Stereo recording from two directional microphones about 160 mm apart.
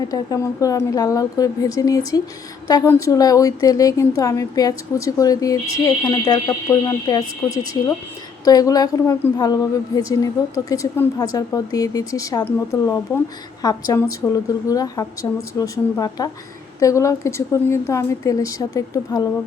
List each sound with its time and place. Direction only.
0.1 s a woman's voice: 20° left (ahead or behind)
13.6 s a woman's voice: 20° left (ahead or behind)
14.2 s a woman's voice: 10° left (ahead or behind)